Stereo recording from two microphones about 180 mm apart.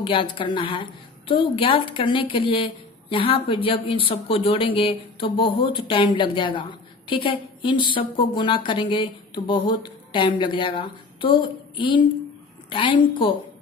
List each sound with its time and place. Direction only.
0.0 s a woman's voice: 30° left (ahead or behind)